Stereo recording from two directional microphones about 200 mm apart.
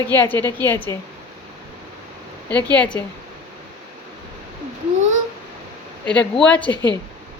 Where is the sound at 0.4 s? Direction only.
10° left (ahead or behind).